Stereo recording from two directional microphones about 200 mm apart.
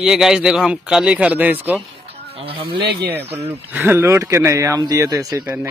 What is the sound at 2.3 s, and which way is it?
Speech, 25° right (ahead or behind).